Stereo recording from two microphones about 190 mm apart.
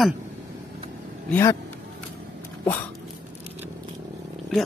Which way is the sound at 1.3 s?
15° left (ahead or behind).